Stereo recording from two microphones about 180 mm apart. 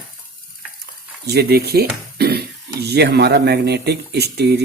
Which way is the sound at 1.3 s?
60° right (ahead or behind).